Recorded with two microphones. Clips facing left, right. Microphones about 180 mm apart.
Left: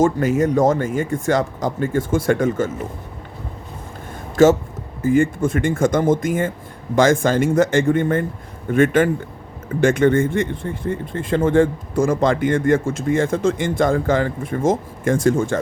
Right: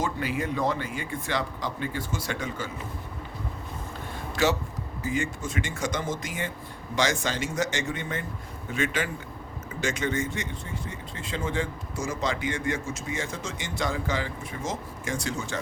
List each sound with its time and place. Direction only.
0.0 s speech: 45° left (ahead or behind)
4.4 s speech: 45° left (ahead or behind)